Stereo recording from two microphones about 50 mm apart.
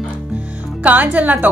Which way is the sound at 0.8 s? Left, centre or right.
Right.